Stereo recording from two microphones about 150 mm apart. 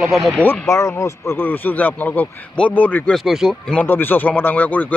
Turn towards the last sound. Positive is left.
turn(degrees=10)  # may be behind; listen again after turning